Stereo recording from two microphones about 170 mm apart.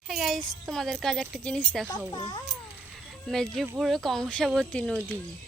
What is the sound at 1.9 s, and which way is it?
Speech, 25° left (ahead or behind).